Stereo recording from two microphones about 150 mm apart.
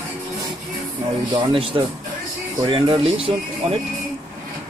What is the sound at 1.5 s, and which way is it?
Speech, 35° right (ahead or behind).